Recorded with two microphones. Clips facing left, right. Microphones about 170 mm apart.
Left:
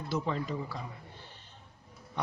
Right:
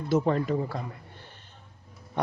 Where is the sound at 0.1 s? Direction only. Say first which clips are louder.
Right 9 dB; 50° right (ahead or behind).